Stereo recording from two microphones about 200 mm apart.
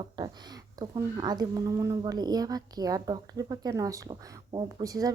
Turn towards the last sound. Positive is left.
turn(degrees=-20)  # may be behind; listen again after turning